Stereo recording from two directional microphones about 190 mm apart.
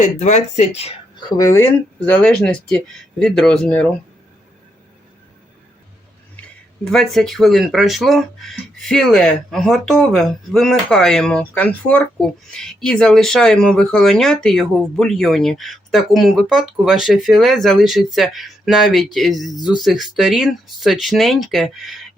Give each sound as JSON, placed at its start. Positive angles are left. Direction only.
{"t": 0.0, "sound": "speech", "side_deg": 40}
{"t": 1.4, "sound": "speech", "side_deg": 15}
{"t": 6.9, "sound": "speech", "side_deg": 5}